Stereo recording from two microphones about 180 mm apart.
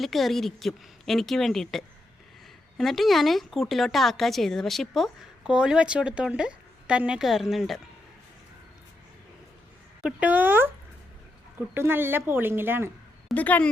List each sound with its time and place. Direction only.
0.0 s speech: centre (ahead or behind)
10.0 s speech: 5° right (ahead or behind)
11.7 s speech: 10° right (ahead or behind)
13.2 s speech: 10° left (ahead or behind)